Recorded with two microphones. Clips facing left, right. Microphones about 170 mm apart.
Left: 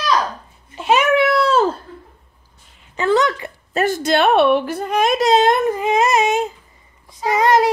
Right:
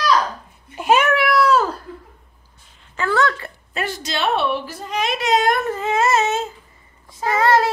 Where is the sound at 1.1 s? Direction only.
25° left (ahead or behind).